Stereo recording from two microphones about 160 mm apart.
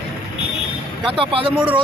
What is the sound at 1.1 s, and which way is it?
Speech, 35° right (ahead or behind).